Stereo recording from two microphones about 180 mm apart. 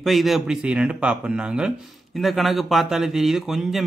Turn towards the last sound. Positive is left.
turn(degrees=0)  # may be behind; listen again after turning